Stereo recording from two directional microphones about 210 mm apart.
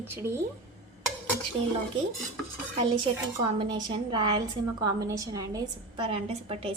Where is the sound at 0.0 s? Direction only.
10° right (ahead or behind).